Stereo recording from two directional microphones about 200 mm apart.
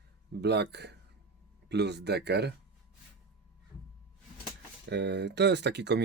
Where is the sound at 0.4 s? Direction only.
55° right (ahead or behind).